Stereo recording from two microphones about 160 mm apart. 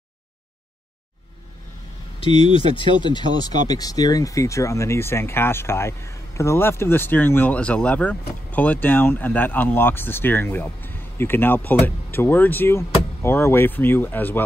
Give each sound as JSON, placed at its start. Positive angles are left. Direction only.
{"t": 2.1, "sound": "speech", "side_deg": 35}